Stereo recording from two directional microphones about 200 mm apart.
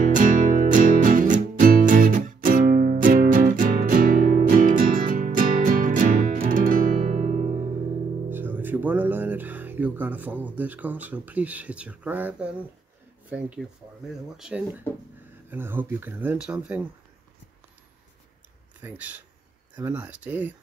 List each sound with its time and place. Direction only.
0.0 s music: 40° right (ahead or behind)
8.3 s music: 10° right (ahead or behind)
13.3 s speech: 5° right (ahead or behind)
18.8 s speech: 10° right (ahead or behind)